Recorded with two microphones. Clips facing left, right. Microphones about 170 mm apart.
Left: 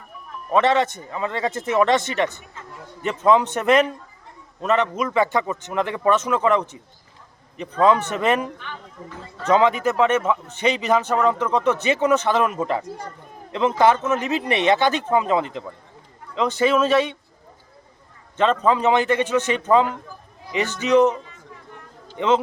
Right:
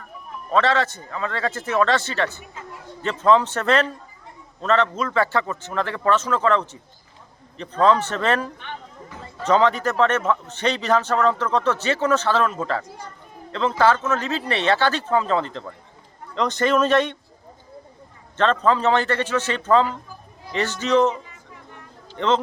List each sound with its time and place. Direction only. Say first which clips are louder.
0.5 s a man's voice: left 2 dB; 20° left (ahead or behind)
18.3 s a man's voice: left 1 dB; 10° left (ahead or behind)
22.2 s a man's voice: left 1 dB; 10° left (ahead or behind)